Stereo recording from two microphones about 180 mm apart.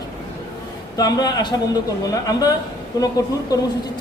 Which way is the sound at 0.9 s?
20° left (ahead or behind).